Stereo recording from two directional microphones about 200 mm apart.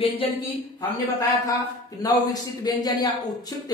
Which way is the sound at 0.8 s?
20° left (ahead or behind).